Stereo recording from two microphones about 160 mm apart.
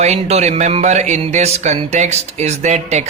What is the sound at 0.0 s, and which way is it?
Speech, 45° right (ahead or behind).